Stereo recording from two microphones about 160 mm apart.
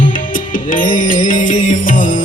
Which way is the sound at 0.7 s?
55° left (ahead or behind).